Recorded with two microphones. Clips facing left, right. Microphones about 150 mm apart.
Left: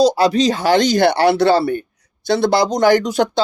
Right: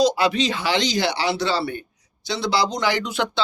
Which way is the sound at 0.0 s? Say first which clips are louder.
Left 6 dB; 40° left (ahead or behind).